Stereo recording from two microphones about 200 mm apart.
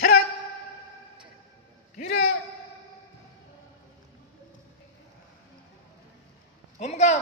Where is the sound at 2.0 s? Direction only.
50° left (ahead or behind).